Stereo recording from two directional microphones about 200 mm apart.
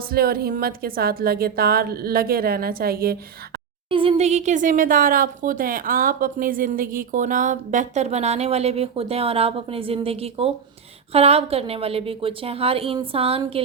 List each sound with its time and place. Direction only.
0.1 s a woman's voice: 50° right (ahead or behind)
3.8 s a woman's voice: 25° right (ahead or behind)